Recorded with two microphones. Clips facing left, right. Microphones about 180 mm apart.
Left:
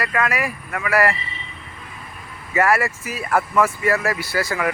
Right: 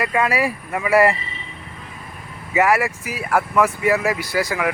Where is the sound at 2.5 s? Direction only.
15° right (ahead or behind).